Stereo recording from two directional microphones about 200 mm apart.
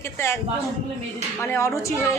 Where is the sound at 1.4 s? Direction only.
15° left (ahead or behind).